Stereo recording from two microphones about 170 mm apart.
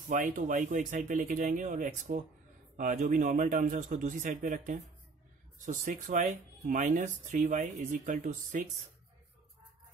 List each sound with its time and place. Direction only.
0.1 s speech: 50° right (ahead or behind)